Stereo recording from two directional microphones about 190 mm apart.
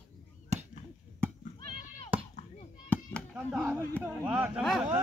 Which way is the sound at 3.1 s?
5° left (ahead or behind).